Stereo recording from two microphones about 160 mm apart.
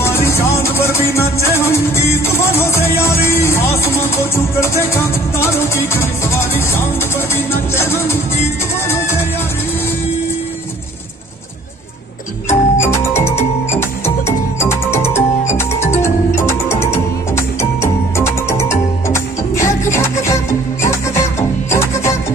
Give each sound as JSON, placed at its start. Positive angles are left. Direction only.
{"t": 0.0, "sound": "music", "side_deg": 15}
{"t": 12.4, "sound": "music", "side_deg": 15}